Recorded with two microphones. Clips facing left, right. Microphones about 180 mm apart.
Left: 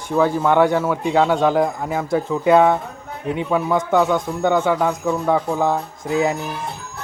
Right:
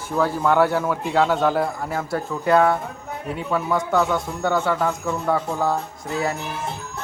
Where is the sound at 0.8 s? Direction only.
5° left (ahead or behind).